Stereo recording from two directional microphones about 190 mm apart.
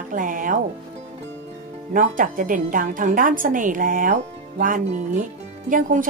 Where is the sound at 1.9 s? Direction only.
45° right (ahead or behind).